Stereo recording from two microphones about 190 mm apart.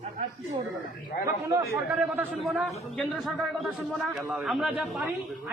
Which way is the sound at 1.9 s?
10° right (ahead or behind).